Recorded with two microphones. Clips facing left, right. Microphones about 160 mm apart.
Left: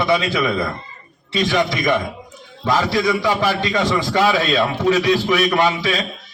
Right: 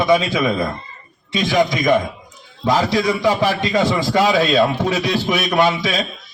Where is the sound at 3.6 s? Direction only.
10° right (ahead or behind).